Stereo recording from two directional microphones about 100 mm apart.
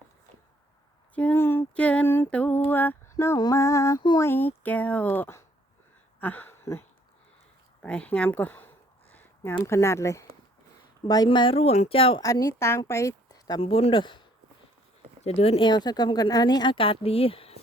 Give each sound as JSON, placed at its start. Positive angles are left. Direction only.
{"t": 1.1, "sound": "speech", "side_deg": 15}
{"t": 1.7, "sound": "speech", "side_deg": 15}
{"t": 2.0, "sound": "speech", "side_deg": 25}
{"t": 7.8, "sound": "speech", "side_deg": 10}
{"t": 11.3, "sound": "speech", "side_deg": 60}
{"t": 12.2, "sound": "a woman's voice", "side_deg": 35}
{"t": 13.6, "sound": "speech", "side_deg": 70}
{"t": 15.2, "sound": "speech", "side_deg": 90}
{"t": 15.6, "sound": "speech", "side_deg": 45}
{"t": 16.7, "sound": "speech", "side_deg": 70}